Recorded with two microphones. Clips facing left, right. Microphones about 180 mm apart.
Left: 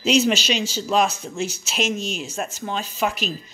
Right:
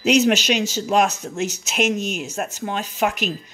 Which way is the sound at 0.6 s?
15° right (ahead or behind).